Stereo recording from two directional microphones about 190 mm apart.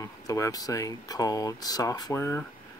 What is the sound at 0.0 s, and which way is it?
Speech, 15° left (ahead or behind).